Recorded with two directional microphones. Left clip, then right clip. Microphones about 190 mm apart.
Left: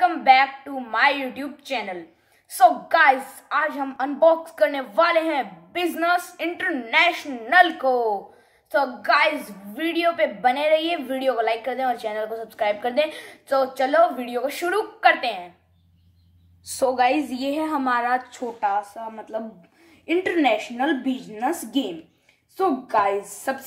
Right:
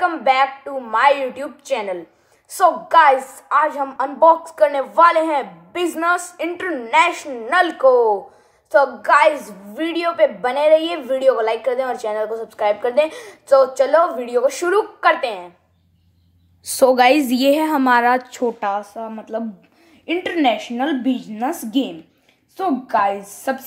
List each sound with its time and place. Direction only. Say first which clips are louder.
0.1 s a woman's voice: even; 15° left (ahead or behind)
16.6 s a woman's voice: right 7 dB; 45° right (ahead or behind)
18.9 s a woman's voice: right 4 dB; 35° right (ahead or behind)